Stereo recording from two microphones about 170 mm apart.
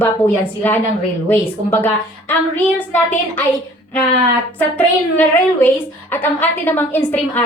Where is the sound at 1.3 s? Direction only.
10° left (ahead or behind).